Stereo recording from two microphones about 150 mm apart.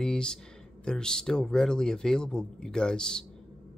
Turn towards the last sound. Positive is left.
turn(degrees=5)  # may be behind; listen again after turning